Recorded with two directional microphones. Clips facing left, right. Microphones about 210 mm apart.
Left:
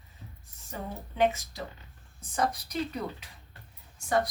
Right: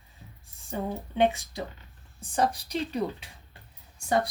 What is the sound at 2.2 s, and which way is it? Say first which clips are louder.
Speech: right 3 dB; 30° right (ahead or behind).